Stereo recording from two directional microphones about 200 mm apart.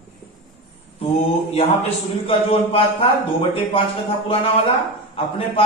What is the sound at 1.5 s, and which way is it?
A man's voice, 30° left (ahead or behind).